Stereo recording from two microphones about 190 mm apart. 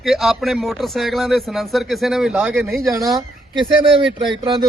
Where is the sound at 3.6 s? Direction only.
25° right (ahead or behind).